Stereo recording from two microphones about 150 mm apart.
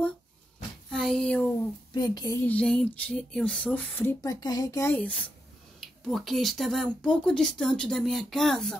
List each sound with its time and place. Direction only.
0.8 s a sound: 5° left (ahead or behind)
2.0 s speech: 25° left (ahead or behind)
2.4 s speech: 5° left (ahead or behind)